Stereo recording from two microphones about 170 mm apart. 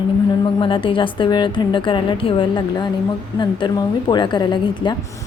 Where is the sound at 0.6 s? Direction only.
30° left (ahead or behind).